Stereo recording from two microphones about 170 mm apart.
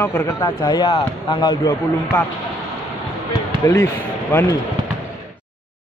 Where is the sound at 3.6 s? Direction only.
15° left (ahead or behind).